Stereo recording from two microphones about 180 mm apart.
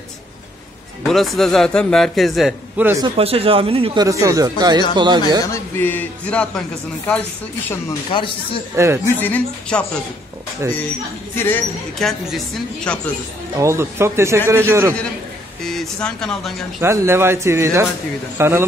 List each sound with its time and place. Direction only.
1.0 s a man's voice: centre (ahead or behind)
3.2 s speech: 30° right (ahead or behind)
5.4 s speech: 15° left (ahead or behind)
8.1 s a man's voice: 30° left (ahead or behind)
8.7 s speech: 15° right (ahead or behind)
9.0 s speech: 10° left (ahead or behind)
10.6 s speech: 15° right (ahead or behind)
11.3 s speech: 10° left (ahead or behind)
12.0 s a man's voice: centre (ahead or behind)
13.6 s speech: 15° right (ahead or behind)
15.6 s speech: centre (ahead or behind)
16.8 s speech: 15° right (ahead or behind)